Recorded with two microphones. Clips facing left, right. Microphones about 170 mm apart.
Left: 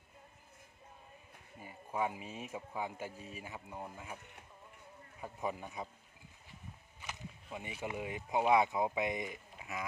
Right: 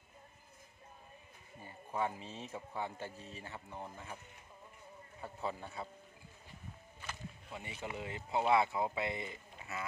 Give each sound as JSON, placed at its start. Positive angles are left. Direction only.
{"t": 1.6, "sound": "speech", "side_deg": 10}
{"t": 5.2, "sound": "speech", "side_deg": 15}
{"t": 7.0, "sound": "speech", "side_deg": 15}